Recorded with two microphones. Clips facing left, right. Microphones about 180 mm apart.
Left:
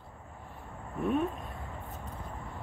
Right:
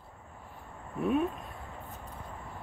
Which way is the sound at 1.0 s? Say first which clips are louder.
Right 1 dB; centre (ahead or behind).